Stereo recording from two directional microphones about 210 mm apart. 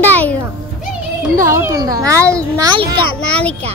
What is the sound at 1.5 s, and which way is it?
A child's voice, 15° right (ahead or behind).